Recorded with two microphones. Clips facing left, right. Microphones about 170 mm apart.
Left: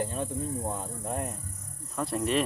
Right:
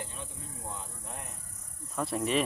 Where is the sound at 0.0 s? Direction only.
50° left (ahead or behind).